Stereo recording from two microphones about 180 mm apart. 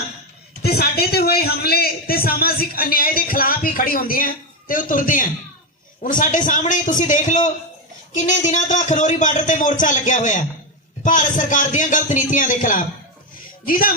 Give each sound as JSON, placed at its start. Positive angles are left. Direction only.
{"t": 0.6, "sound": "a man's voice", "side_deg": 60}